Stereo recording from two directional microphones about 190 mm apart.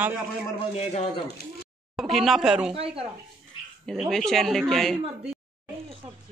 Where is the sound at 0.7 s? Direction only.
30° left (ahead or behind).